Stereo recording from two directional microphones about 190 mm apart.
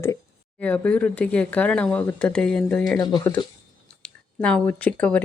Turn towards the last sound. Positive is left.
turn(degrees=5)  # may be behind; listen again after turning